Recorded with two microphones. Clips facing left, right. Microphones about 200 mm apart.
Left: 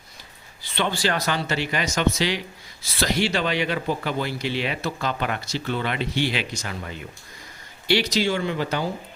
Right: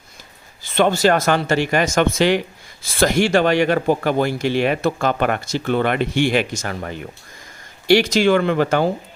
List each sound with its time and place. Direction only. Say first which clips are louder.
0.6 s speech: right 9 dB; 45° right (ahead or behind)